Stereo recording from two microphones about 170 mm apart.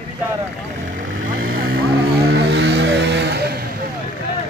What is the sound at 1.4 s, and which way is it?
Vehicle, 60° right (ahead or behind).